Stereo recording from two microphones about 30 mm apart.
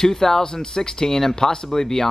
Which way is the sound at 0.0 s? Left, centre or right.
Centre.